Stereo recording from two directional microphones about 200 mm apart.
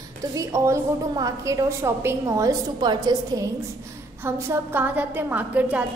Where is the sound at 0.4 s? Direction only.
15° right (ahead or behind).